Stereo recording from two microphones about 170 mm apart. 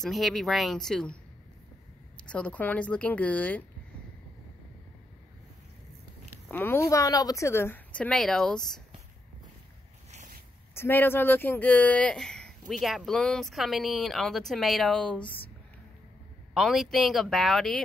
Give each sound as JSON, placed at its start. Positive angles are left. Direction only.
{"t": 0.0, "sound": "speech", "side_deg": 0}
{"t": 2.1, "sound": "speech", "side_deg": 5}
{"t": 6.5, "sound": "speech", "side_deg": 15}
{"t": 10.1, "sound": "a sound", "side_deg": -50}
{"t": 10.7, "sound": "speech", "side_deg": 15}
{"t": 16.5, "sound": "speech", "side_deg": 0}